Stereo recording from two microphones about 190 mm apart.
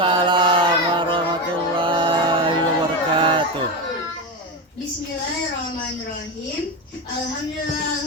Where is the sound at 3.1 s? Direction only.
25° right (ahead or behind).